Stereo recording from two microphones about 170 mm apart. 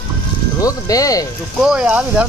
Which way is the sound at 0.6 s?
20° left (ahead or behind).